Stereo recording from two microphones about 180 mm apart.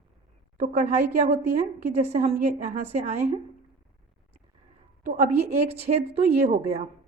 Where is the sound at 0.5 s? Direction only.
45° right (ahead or behind).